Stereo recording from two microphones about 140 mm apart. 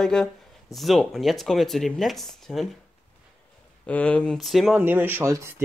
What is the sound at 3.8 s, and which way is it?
Speech, 10° left (ahead or behind).